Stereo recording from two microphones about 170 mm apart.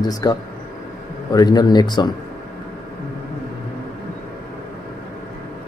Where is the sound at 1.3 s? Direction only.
25° left (ahead or behind).